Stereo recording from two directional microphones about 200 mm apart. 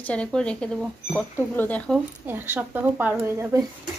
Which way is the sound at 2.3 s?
10° right (ahead or behind).